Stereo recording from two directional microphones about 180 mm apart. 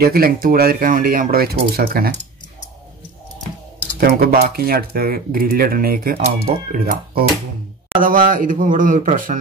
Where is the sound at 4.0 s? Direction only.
55° right (ahead or behind).